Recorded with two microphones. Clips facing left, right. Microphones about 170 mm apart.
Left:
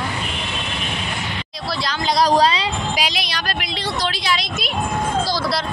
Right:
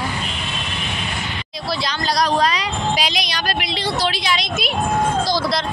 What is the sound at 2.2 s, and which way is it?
Speech, 30° left (ahead or behind).